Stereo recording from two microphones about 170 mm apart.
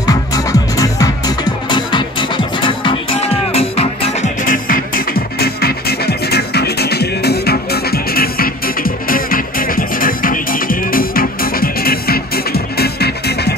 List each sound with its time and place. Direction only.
0.0 s music: 20° left (ahead or behind); by 4.3 s 35° left (ahead or behind)
4.5 s music: 55° left (ahead or behind)